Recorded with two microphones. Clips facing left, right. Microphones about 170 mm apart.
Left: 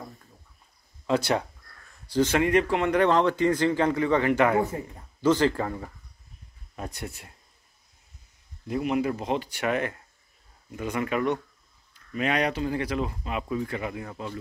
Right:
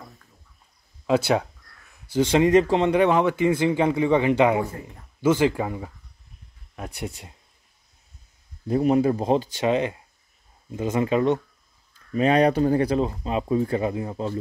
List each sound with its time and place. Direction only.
1.0 s speech: 10° right (ahead or behind)
2.9 s a man's voice: 15° right (ahead or behind)
8.6 s speech: 35° right (ahead or behind)